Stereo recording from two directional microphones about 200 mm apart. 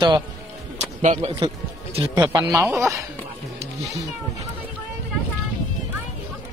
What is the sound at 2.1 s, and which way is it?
Speech, 15° right (ahead or behind).